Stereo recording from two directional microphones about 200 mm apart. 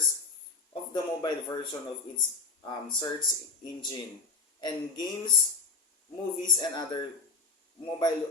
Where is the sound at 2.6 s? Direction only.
20° left (ahead or behind).